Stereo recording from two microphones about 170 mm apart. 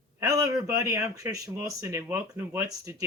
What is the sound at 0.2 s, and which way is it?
A man's voice, 20° right (ahead or behind).